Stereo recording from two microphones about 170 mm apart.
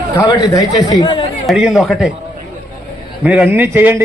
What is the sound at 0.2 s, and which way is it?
A man's voice, 20° left (ahead or behind).